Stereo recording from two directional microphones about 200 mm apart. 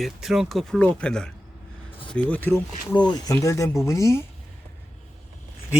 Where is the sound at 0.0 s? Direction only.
Centre (ahead or behind).